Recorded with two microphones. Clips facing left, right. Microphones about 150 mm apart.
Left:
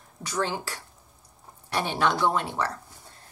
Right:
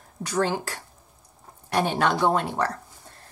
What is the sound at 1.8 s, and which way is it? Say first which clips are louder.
Speech: right 3 dB; 45° right (ahead or behind).